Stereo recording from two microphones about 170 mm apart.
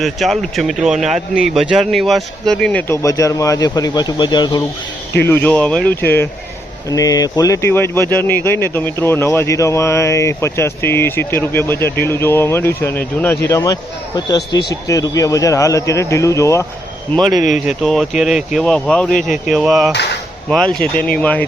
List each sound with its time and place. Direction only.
0.0 s speech: centre (ahead or behind); by 4.6 s 25° left (ahead or behind)
5.3 s speech: 10° left (ahead or behind)
17.7 s speech: centre (ahead or behind)